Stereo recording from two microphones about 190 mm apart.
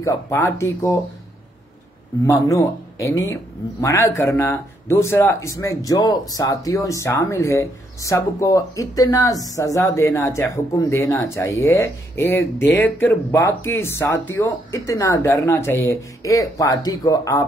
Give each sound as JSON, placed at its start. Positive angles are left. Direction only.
{"t": 0.0, "sound": "speech", "side_deg": 15}
{"t": 2.2, "sound": "speech", "side_deg": 15}